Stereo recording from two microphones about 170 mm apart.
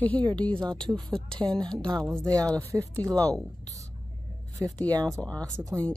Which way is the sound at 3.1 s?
5° left (ahead or behind).